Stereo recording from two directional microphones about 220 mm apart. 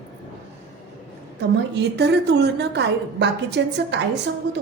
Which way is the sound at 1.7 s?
50° right (ahead or behind).